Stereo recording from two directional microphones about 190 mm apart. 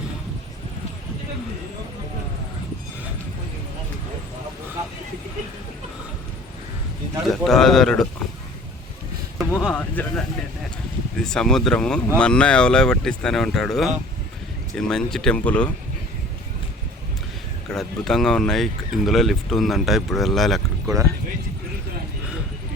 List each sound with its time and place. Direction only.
7.4 s speech: centre (ahead or behind)
9.4 s speech: centre (ahead or behind)
17.7 s speech: centre (ahead or behind)
20.8 s speech: 15° right (ahead or behind)